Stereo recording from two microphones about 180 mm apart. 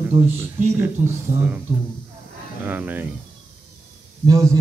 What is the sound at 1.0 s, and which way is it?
Speech, 10° right (ahead or behind).